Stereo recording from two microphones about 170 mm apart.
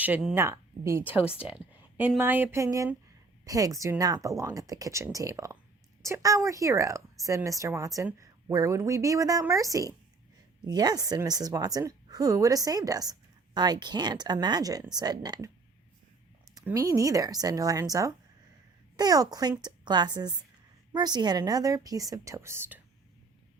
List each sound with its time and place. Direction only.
0.0 s a woman's voice: 5° right (ahead or behind); by 15.4 s 25° right (ahead or behind)
16.6 s a woman's voice: 20° right (ahead or behind)